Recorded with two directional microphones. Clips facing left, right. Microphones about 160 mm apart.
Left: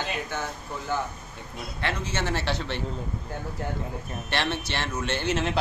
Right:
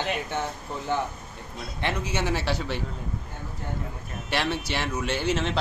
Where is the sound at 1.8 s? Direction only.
15° right (ahead or behind).